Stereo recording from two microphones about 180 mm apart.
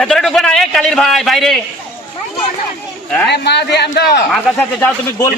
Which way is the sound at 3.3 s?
70° left (ahead or behind).